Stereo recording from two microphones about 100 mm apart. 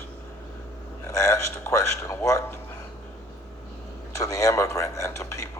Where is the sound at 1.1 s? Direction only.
30° left (ahead or behind).